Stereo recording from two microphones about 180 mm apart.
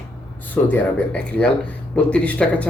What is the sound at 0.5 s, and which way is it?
A man's voice, 10° left (ahead or behind).